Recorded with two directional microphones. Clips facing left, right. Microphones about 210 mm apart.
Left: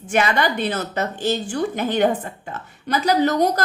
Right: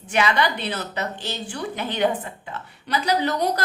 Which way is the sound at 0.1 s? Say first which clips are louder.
Left 2 dB; 50° left (ahead or behind).